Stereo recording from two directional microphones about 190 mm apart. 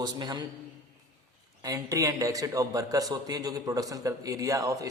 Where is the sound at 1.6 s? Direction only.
15° right (ahead or behind).